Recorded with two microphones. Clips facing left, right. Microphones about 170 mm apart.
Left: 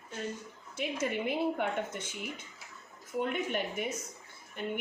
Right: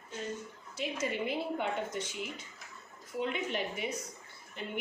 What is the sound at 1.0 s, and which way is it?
Speech, 55° left (ahead or behind).